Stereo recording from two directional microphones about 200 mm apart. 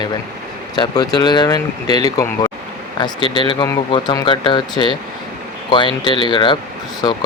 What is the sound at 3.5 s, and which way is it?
Speech, 20° left (ahead or behind).